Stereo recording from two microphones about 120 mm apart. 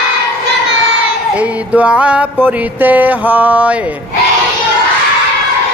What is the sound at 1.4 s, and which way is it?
Music, 10° right (ahead or behind).